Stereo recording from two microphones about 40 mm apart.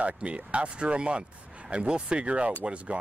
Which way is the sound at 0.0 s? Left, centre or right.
Right.